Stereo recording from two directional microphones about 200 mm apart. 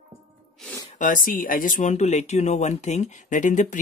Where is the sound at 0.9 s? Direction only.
40° left (ahead or behind).